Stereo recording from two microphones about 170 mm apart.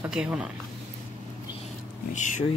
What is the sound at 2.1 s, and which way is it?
Speech, 45° left (ahead or behind).